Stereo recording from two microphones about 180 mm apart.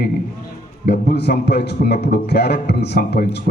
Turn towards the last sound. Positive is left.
turn(degrees=65)  # may be behind; listen again after turning